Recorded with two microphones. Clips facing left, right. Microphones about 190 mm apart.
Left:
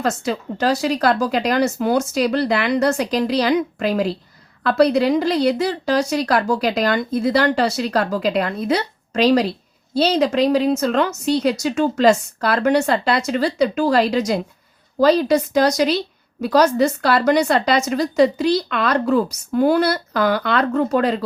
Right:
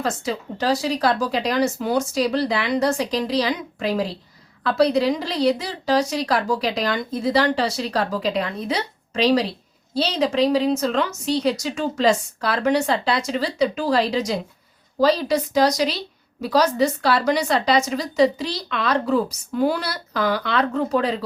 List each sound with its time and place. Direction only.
0.0 s a woman's voice: 50° left (ahead or behind)
4.6 s a woman's voice: 55° left (ahead or behind)